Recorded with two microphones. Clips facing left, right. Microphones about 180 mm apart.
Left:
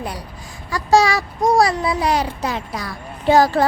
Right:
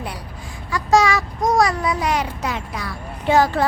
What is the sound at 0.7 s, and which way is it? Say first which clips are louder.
A child's voice: left 1 dB; 35° left (ahead or behind).